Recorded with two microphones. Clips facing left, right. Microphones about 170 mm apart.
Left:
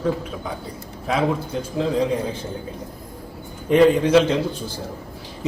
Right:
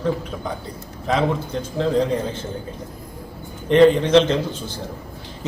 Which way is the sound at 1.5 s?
5° left (ahead or behind).